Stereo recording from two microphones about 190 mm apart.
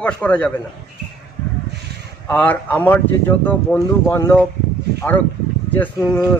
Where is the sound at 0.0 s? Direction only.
5° left (ahead or behind).